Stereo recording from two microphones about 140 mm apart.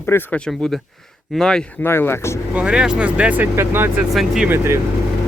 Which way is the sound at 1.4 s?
5° left (ahead or behind).